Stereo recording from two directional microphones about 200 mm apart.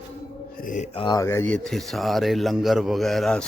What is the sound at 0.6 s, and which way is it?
Speech, 40° left (ahead or behind).